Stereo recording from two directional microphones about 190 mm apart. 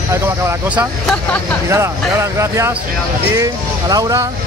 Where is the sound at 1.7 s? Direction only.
15° right (ahead or behind).